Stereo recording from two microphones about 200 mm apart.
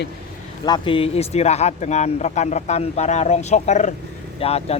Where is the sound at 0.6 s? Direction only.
25° left (ahead or behind).